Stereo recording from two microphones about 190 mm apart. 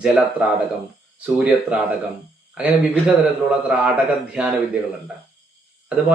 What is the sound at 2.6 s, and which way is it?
Speech, 10° right (ahead or behind).